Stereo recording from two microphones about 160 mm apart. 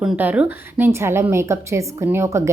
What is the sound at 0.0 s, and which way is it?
A woman's voice, 10° right (ahead or behind).